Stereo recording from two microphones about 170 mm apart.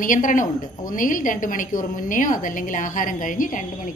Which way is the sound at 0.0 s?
50° left (ahead or behind).